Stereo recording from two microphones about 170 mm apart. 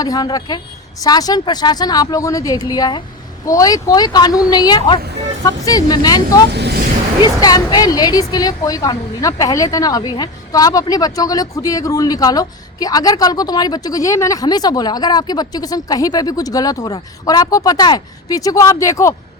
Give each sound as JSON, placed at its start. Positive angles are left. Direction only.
{"t": 0.0, "sound": "a woman's voice", "side_deg": 20}
{"t": 6.5, "sound": "speech", "side_deg": -75}
{"t": 7.4, "sound": "a woman's voice", "side_deg": 20}